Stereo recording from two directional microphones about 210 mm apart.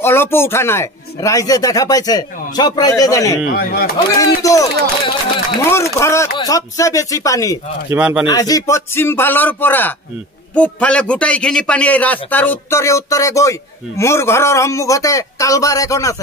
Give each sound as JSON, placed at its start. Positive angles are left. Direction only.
{"t": 0.0, "sound": "a man's voice", "side_deg": 10}
{"t": 3.5, "sound": "speech", "side_deg": 45}
{"t": 4.4, "sound": "a man's voice", "side_deg": 15}
{"t": 7.9, "sound": "speech", "side_deg": -5}
{"t": 8.3, "sound": "a man's voice", "side_deg": 15}